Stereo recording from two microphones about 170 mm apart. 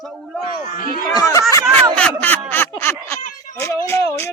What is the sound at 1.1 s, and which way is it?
Speech, 20° left (ahead or behind).